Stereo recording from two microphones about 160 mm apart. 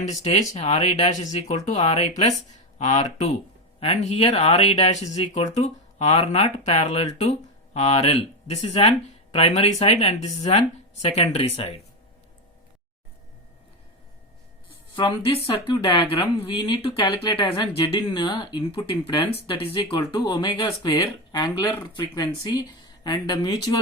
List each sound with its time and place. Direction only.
0.0 s speech: 45° left (ahead or behind)
14.9 s speech: 30° left (ahead or behind)